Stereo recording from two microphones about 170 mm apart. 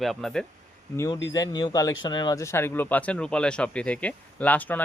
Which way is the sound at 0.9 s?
20° left (ahead or behind).